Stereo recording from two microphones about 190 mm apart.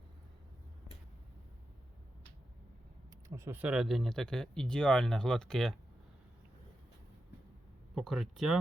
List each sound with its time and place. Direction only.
3.2 s speech: 15° right (ahead or behind); by 5.7 s 5° left (ahead or behind)
7.9 s speech: centre (ahead or behind)